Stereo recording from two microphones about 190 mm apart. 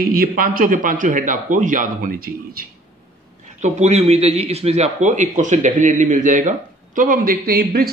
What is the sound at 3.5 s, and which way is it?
A man's voice, 35° right (ahead or behind).